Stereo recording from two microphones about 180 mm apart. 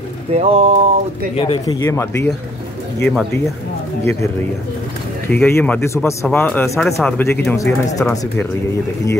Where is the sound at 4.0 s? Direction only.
15° left (ahead or behind).